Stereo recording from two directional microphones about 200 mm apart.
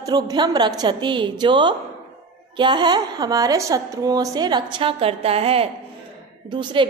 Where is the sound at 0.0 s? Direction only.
20° right (ahead or behind).